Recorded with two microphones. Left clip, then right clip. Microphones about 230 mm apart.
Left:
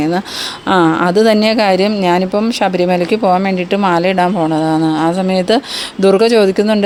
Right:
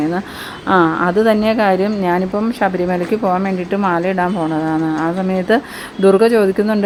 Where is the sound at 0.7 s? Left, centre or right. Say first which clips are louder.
Left 2 dB; left.